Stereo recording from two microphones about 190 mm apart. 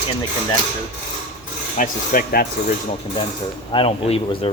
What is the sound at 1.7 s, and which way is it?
Speech, 50° left (ahead or behind).